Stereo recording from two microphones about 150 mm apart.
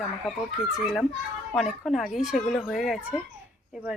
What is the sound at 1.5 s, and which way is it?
Speech, centre (ahead or behind).